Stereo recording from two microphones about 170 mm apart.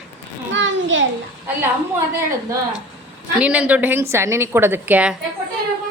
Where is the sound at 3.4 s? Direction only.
10° right (ahead or behind).